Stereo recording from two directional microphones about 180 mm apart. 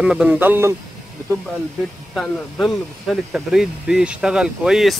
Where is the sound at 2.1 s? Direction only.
5° left (ahead or behind).